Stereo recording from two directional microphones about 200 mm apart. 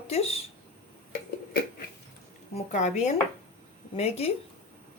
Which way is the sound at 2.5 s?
35° left (ahead or behind).